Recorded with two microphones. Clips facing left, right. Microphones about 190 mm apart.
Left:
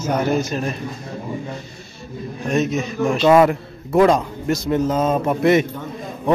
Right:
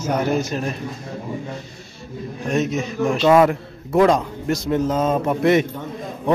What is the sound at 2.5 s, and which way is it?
A man's voice, centre (ahead or behind).